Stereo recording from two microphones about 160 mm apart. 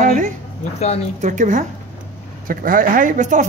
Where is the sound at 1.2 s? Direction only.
50° right (ahead or behind).